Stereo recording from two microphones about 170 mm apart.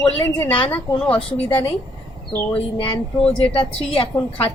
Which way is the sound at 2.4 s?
10° left (ahead or behind).